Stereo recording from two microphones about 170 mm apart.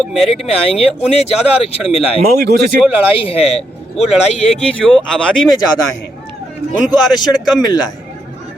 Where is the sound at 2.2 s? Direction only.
70° right (ahead or behind).